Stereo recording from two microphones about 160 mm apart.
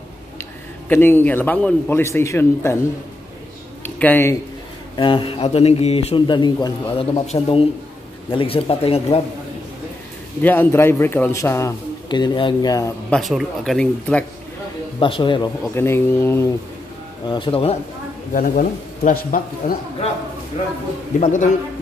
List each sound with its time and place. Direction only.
0.4 s a man's voice: 15° left (ahead or behind)
3.8 s speech: 10° left (ahead or behind)
4.9 s a man's voice: 30° left (ahead or behind)
10.4 s a man's voice: 10° left (ahead or behind)
12.1 s speech: 30° left (ahead or behind)
13.1 s speech: centre (ahead or behind)
15.0 s a man's voice: 30° left (ahead or behind)
15.7 s a man's voice: 15° left (ahead or behind)
17.3 s a man's voice: 35° left (ahead or behind)
18.3 s speech: 60° left (ahead or behind)
21.2 s a man's voice: 50° left (ahead or behind)